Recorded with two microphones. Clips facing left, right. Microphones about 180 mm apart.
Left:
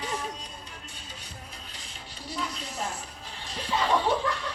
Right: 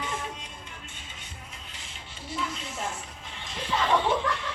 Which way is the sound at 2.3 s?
35° left (ahead or behind).